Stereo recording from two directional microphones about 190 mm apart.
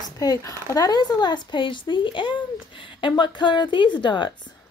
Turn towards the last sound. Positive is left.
turn(degrees=25)  # may be behind; listen again after turning